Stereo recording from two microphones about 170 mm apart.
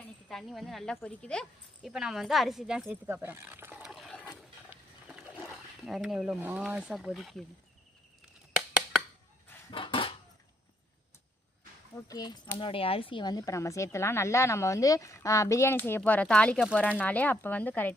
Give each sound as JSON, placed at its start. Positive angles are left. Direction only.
{"t": 0.3, "sound": "speech", "side_deg": 0}
{"t": 3.9, "sound": "ratchet", "side_deg": 0}
{"t": 4.7, "sound": "a sound", "side_deg": -5}
{"t": 5.5, "sound": "speech", "side_deg": 0}
{"t": 9.7, "sound": "dishes", "side_deg": 30}
{"t": 12.0, "sound": "speech", "side_deg": 25}